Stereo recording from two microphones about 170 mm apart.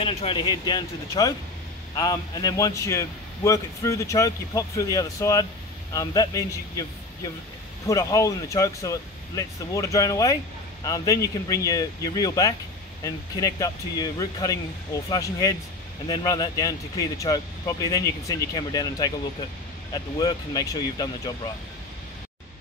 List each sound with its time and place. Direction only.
0.0 s a man's voice: 35° left (ahead or behind)